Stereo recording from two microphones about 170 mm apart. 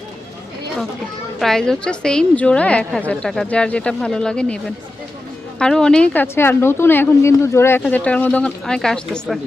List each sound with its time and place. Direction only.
1.4 s a woman's voice: 5° left (ahead or behind)